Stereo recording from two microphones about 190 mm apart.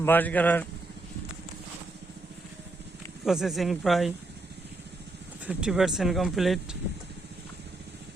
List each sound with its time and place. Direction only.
0.0 s speech: 10° left (ahead or behind)
3.2 s speech: centre (ahead or behind)
5.5 s speech: 5° right (ahead or behind)